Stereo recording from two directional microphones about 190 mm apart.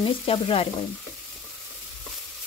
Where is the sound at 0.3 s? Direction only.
30° left (ahead or behind).